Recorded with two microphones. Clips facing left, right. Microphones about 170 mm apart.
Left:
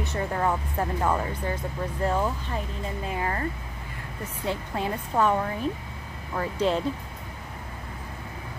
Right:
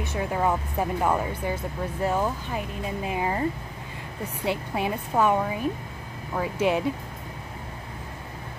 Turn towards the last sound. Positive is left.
turn(degrees=-10)  # may be behind; listen again after turning